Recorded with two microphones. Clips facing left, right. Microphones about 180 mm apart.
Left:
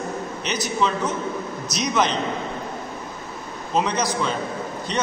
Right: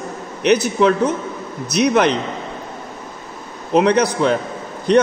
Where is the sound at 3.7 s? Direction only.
65° right (ahead or behind).